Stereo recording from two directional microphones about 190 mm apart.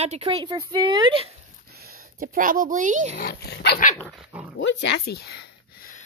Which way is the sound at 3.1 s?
55° left (ahead or behind).